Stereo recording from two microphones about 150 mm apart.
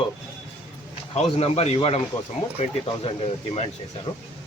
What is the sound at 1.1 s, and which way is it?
Speech, 45° left (ahead or behind).